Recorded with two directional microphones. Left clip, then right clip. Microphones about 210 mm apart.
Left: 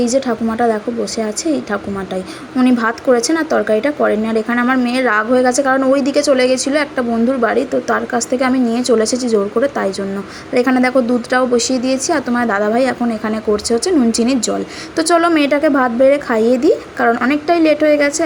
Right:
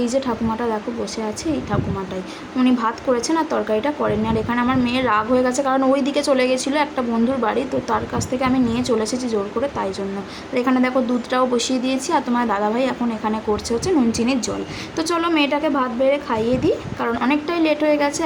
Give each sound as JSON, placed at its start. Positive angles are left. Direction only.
{"t": 0.0, "sound": "speech", "side_deg": 15}
{"t": 2.6, "sound": "a woman's voice", "side_deg": 20}